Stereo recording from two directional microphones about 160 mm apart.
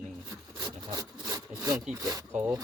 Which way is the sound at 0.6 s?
25° right (ahead or behind).